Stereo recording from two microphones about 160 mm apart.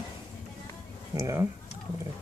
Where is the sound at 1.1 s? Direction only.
20° right (ahead or behind).